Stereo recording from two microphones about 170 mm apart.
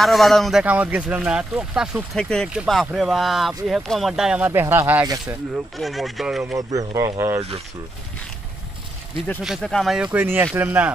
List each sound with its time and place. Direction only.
0.0 s speech: centre (ahead or behind)
5.8 s speech: centre (ahead or behind)
6.7 s speech: 20° right (ahead or behind)
9.4 s speech: centre (ahead or behind)
10.1 s speech: 10° right (ahead or behind)